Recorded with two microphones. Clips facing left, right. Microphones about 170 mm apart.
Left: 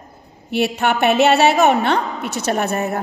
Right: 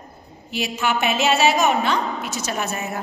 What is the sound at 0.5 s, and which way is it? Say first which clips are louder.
A woman's voice: left 5 dB; 60° left (ahead or behind).